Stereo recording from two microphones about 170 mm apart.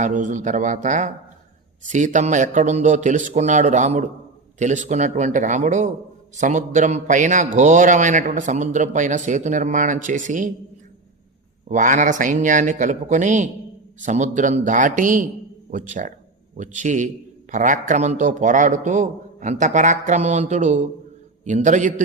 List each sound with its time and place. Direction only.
0.0 s a man's voice: 45° right (ahead or behind)
11.7 s a man's voice: 45° right (ahead or behind)